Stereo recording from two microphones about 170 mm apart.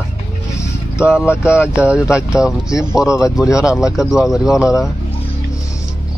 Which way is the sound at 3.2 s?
20° left (ahead or behind).